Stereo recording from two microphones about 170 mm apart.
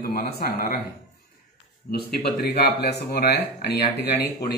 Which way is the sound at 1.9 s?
65° left (ahead or behind).